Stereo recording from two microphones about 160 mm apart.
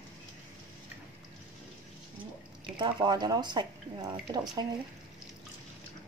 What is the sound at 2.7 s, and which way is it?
Speech, 25° right (ahead or behind).